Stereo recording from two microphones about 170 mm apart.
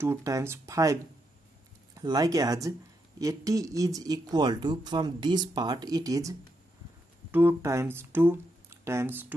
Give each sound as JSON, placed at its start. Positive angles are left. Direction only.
{"t": 0.0, "sound": "speech", "side_deg": -15}
{"t": 2.0, "sound": "speech", "side_deg": -20}